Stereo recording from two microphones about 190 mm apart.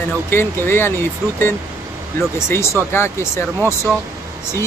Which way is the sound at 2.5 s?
15° left (ahead or behind).